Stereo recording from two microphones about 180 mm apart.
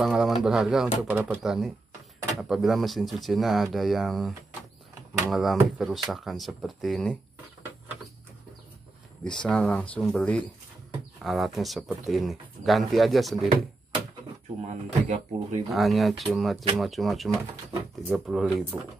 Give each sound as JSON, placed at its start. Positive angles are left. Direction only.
{"t": 0.0, "sound": "speech", "side_deg": 0}
{"t": 5.3, "sound": "speech", "side_deg": 0}
{"t": 9.2, "sound": "speech", "side_deg": 5}
{"t": 14.6, "sound": "speech", "side_deg": -40}
{"t": 15.7, "sound": "speech", "side_deg": 0}